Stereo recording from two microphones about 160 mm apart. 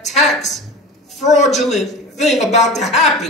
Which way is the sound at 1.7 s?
45° left (ahead or behind).